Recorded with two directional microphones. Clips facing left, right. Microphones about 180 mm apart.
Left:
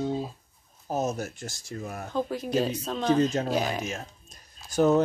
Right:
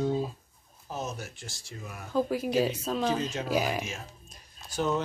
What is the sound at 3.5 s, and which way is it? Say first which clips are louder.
Speech: left 1 dB; 5° right (ahead or behind).